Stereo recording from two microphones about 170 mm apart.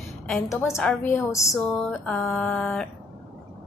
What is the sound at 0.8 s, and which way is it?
A woman's voice, 15° left (ahead or behind).